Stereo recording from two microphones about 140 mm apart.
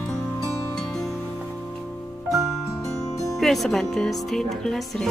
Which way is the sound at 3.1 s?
25° left (ahead or behind).